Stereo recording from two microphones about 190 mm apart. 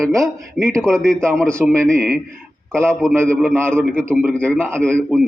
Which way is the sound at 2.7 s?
15° right (ahead or behind).